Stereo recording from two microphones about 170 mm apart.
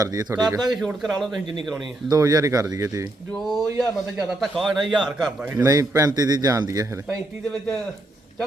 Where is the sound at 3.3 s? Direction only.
Centre (ahead or behind); by 7.0 s 20° right (ahead or behind).